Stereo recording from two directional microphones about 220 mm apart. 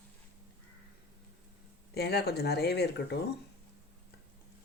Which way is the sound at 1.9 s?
45° left (ahead or behind).